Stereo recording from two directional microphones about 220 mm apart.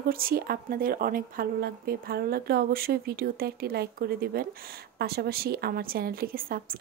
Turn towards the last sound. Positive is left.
turn(degrees=-40)  # may be behind; listen again after turning